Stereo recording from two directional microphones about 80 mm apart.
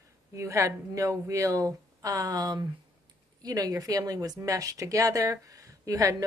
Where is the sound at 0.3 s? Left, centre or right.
Right.